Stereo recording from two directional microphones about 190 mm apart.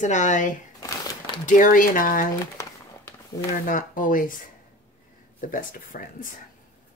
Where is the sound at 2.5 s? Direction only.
15° left (ahead or behind).